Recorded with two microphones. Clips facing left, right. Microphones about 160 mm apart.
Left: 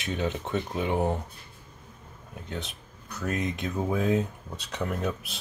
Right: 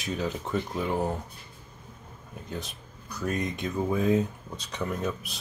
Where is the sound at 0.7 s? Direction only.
20° left (ahead or behind).